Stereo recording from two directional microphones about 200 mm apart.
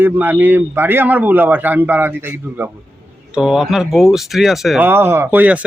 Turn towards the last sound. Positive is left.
turn(degrees=-10)  # may be behind; listen again after turning